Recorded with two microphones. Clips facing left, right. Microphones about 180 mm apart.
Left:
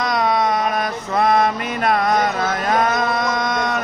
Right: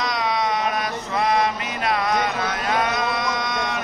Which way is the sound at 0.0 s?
50° left (ahead or behind).